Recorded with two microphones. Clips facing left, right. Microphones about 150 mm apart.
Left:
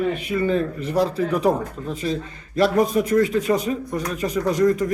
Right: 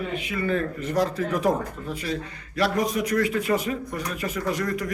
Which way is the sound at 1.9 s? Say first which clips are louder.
Left 6 dB; 25° left (ahead or behind).